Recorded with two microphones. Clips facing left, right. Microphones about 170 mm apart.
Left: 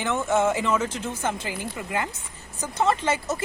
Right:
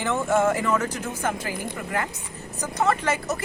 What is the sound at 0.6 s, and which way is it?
Speech, 20° left (ahead or behind).